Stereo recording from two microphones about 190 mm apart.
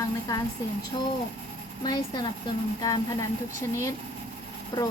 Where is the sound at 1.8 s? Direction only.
20° left (ahead or behind).